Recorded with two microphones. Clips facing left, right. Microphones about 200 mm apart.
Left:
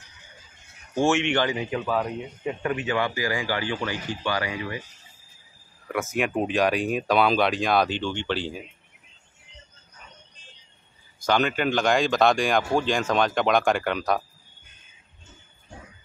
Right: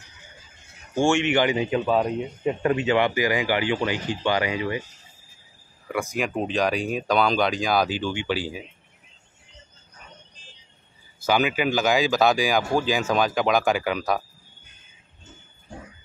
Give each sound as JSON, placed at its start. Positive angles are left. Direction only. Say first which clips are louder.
{"t": 0.9, "sound": "speech", "louder": "right 1 dB", "side_deg": 0}
{"t": 1.3, "sound": "speech", "louder": "right 4 dB", "side_deg": -20}
{"t": 5.9, "sound": "speech", "louder": "even", "side_deg": 0}
{"t": 11.1, "sound": "speech", "louder": "right 1 dB", "side_deg": -5}